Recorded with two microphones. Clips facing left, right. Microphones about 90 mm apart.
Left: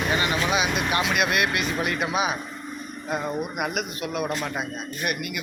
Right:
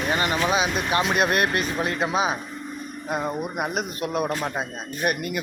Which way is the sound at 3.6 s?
35° right (ahead or behind).